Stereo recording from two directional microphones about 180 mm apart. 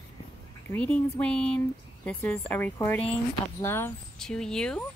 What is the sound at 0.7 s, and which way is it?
Speech, 5° left (ahead or behind).